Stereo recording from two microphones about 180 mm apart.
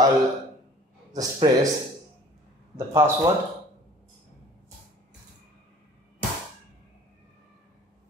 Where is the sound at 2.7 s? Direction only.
15° right (ahead or behind).